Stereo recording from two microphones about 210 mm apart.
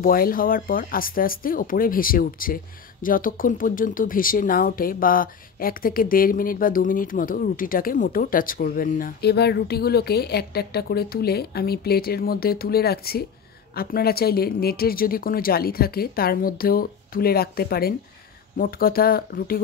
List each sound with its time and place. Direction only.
0.0 s speech: 45° left (ahead or behind)